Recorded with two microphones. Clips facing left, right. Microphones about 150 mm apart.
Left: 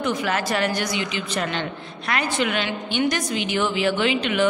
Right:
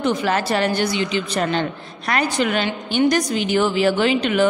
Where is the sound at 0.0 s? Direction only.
30° right (ahead or behind).